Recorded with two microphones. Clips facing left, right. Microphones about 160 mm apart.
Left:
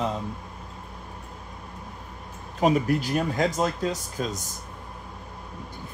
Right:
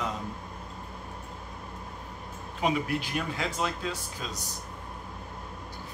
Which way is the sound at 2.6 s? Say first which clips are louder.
Left 6 dB; 40° left (ahead or behind).